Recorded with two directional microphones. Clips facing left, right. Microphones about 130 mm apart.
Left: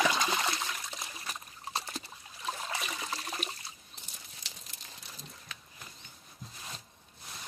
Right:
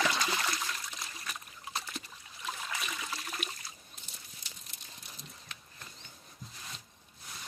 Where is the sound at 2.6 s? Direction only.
30° left (ahead or behind).